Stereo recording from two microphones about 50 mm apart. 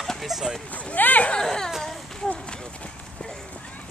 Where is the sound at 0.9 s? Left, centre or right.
Left.